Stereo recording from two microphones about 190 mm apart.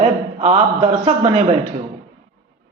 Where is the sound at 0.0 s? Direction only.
35° right (ahead or behind).